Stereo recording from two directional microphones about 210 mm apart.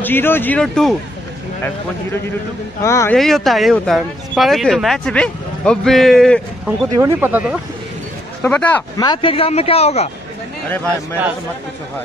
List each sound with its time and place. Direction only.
0.0 s speech: 10° left (ahead or behind)
2.8 s speech: 15° left (ahead or behind)
3.2 s speech: centre (ahead or behind)
7.0 s speech: 10° right (ahead or behind)
8.4 s speech: 5° left (ahead or behind)
8.9 s speech: 20° left (ahead or behind)